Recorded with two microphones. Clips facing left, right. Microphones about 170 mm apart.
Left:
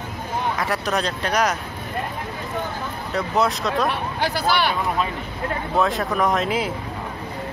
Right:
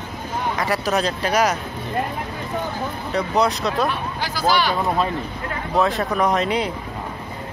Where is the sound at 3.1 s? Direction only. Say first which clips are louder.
Right 1 dB; centre (ahead or behind).